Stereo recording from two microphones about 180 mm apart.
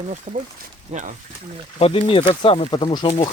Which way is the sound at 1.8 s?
30° left (ahead or behind).